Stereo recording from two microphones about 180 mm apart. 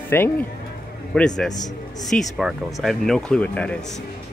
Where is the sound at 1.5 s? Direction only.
20° left (ahead or behind).